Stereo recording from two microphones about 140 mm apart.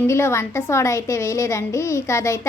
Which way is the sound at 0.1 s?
20° left (ahead or behind).